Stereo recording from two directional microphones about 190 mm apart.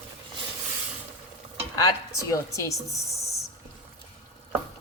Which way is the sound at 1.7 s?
20° left (ahead or behind).